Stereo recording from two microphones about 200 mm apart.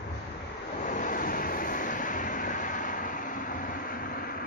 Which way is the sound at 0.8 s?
40° left (ahead or behind).